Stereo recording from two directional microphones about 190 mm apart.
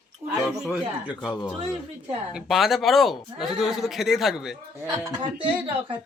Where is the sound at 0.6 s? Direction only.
5° right (ahead or behind).